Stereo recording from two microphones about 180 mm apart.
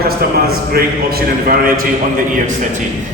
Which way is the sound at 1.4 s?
55° right (ahead or behind).